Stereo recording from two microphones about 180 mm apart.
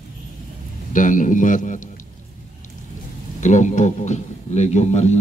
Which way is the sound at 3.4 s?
40° left (ahead or behind).